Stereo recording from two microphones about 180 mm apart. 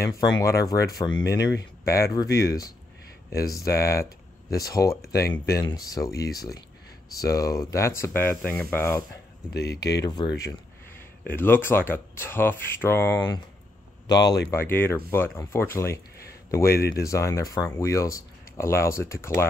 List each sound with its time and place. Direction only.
0.0 s speech: 20° left (ahead or behind)
1.4 s speech: 70° left (ahead or behind)
1.9 s speech: 15° left (ahead or behind)
3.4 s speech: 15° left (ahead or behind)
9.5 s speech: 65° left (ahead or behind)
10.0 s speech: 20° left (ahead or behind)
11.2 s speech: 10° left (ahead or behind)